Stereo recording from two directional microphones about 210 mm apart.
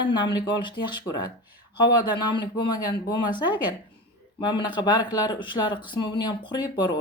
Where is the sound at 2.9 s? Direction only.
20° left (ahead or behind).